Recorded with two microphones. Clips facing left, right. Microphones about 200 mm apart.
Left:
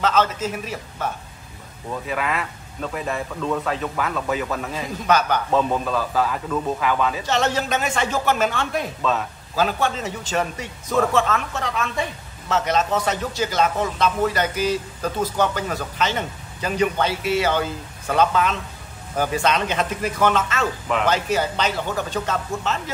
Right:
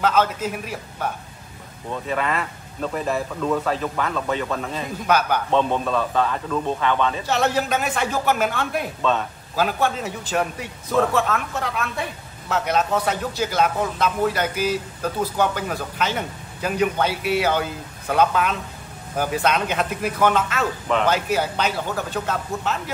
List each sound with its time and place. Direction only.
0.0 s a man's voice: 10° right (ahead or behind)
1.9 s speech: 5° left (ahead or behind)
5.0 s a man's voice: 10° right (ahead or behind)
5.5 s speech: 5° left (ahead or behind)
7.2 s a man's voice: 10° right (ahead or behind)
9.0 s a man's voice: centre (ahead or behind)